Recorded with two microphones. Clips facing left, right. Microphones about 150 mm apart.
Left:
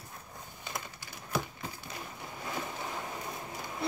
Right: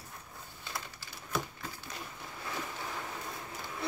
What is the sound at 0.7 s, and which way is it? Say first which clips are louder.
Typing: left 1 dB; 15° left (ahead or behind).